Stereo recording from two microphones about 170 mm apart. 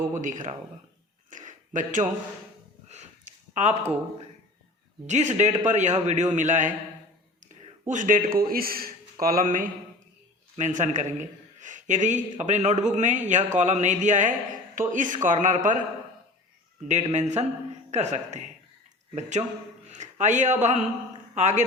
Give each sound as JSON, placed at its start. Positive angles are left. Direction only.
{"t": 0.1, "sound": "a man's voice", "side_deg": -50}
{"t": 1.3, "sound": "a sound", "side_deg": -50}
{"t": 5.0, "sound": "a man's voice", "side_deg": -45}
{"t": 16.9, "sound": "a man's voice", "side_deg": -40}